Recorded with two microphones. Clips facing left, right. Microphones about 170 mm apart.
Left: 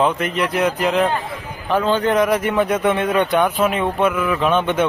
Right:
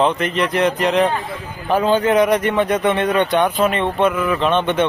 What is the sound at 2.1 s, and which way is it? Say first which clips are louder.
Speech: right 2 dB; centre (ahead or behind).